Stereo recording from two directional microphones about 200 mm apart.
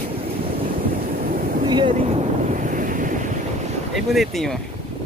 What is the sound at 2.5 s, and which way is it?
Wind noise, 40° right (ahead or behind).